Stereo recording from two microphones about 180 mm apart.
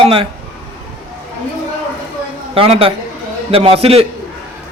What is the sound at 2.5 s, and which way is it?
A man's voice, 30° right (ahead or behind).